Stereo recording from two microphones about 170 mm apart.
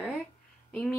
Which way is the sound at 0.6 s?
5° left (ahead or behind).